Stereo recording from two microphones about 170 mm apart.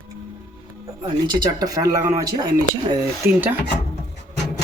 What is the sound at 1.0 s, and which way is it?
Speech, 25° right (ahead or behind).